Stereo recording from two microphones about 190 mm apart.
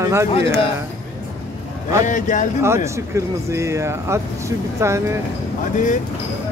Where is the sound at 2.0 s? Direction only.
40° left (ahead or behind).